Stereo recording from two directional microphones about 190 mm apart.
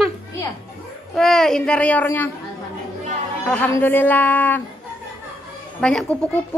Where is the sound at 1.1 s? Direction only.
Centre (ahead or behind).